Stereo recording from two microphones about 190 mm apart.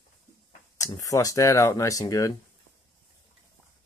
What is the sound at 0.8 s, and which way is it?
Speech, 20° left (ahead or behind).